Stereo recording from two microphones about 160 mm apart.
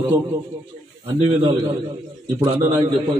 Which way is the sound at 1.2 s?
25° right (ahead or behind).